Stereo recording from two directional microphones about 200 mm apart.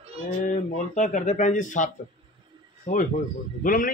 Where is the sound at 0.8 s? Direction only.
35° left (ahead or behind).